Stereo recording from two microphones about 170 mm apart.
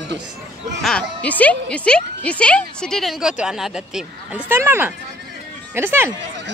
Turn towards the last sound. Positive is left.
turn(degrees=-15)  # may be behind; listen again after turning